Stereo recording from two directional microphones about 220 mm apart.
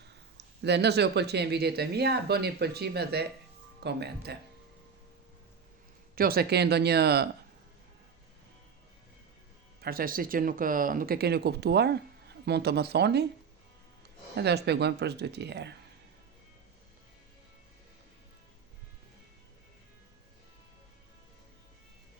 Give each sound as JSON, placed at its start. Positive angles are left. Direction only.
{"t": 0.0, "sound": "speech", "side_deg": -50}
{"t": 6.1, "sound": "speech", "side_deg": -45}
{"t": 9.8, "sound": "speech", "side_deg": -40}
{"t": 14.3, "sound": "speech", "side_deg": -50}